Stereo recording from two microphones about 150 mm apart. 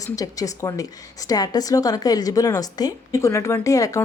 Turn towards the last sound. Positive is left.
turn(degrees=20)  # may be behind; listen again after turning